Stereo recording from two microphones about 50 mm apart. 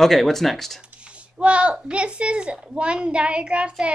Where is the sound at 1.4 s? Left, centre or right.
Right.